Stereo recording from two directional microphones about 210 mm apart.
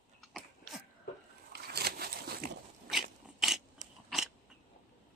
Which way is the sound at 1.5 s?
50° right (ahead or behind).